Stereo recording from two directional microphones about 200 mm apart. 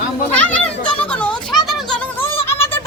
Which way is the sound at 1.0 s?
5° left (ahead or behind).